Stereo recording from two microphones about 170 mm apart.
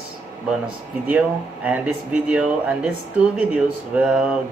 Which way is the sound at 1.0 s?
10° right (ahead or behind).